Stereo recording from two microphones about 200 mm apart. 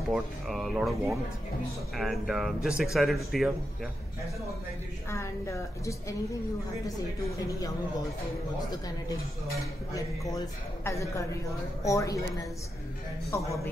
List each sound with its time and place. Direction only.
0.1 s speech: centre (ahead or behind)
2.0 s speech: centre (ahead or behind)
5.1 s a man's voice: 15° left (ahead or behind)
7.2 s a man's voice: 15° left (ahead or behind)
9.9 s a man's voice: 15° left (ahead or behind)
13.3 s a man's voice: 10° left (ahead or behind)